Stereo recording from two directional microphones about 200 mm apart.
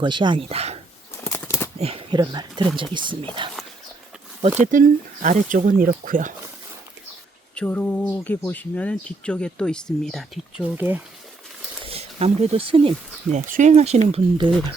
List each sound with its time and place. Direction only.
0.0 s speech: 25° right (ahead or behind)
1.2 s bird flight: 15° left (ahead or behind)
1.8 s speech: 30° right (ahead or behind)
4.6 s speech: 40° right (ahead or behind)
7.5 s speech: 5° left (ahead or behind); by 11.0 s 10° right (ahead or behind)
11.9 s speech: 30° right (ahead or behind)